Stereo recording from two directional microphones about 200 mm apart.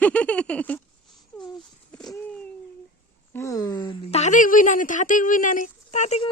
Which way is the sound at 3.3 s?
15° left (ahead or behind).